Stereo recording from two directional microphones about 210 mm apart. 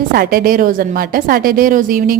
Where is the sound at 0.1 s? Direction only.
45° right (ahead or behind).